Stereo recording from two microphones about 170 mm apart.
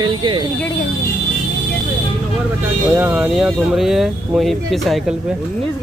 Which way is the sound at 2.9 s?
5° right (ahead or behind).